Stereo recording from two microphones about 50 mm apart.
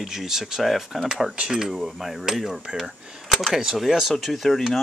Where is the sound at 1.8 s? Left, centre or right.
Centre.